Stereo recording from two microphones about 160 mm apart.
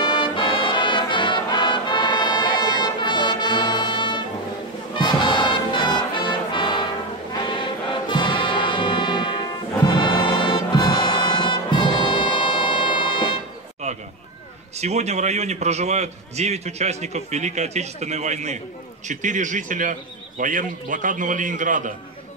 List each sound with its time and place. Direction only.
0.0 s brass instrument: 30° left (ahead or behind)
4.9 s music: 30° left (ahead or behind)
8.1 s music: 30° left (ahead or behind)
13.8 s a sound: 45° right (ahead or behind)
14.8 s a man's voice: 45° right (ahead or behind)